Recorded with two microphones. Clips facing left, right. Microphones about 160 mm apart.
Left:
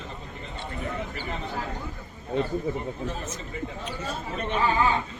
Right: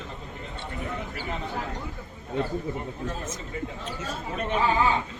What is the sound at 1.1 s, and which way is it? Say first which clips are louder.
Speech: even; 10° right (ahead or behind).